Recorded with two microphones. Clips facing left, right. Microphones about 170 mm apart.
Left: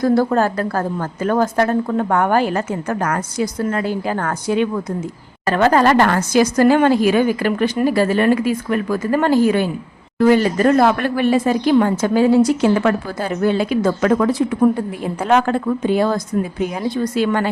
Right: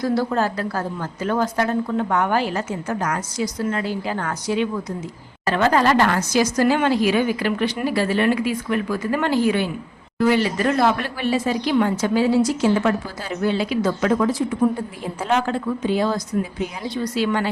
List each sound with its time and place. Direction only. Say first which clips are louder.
0.0 s speech: left 5 dB; 50° left (ahead or behind)